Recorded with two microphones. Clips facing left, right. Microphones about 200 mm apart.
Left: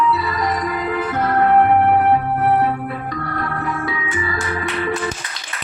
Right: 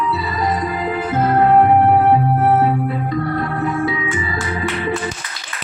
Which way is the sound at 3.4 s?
25° right (ahead or behind).